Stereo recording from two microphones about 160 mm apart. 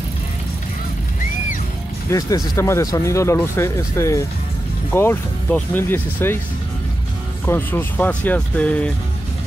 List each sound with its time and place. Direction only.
2.0 s speech: 20° left (ahead or behind)
7.4 s speech: 15° left (ahead or behind)